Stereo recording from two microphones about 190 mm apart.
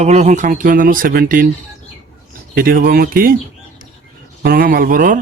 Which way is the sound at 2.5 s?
50° right (ahead or behind).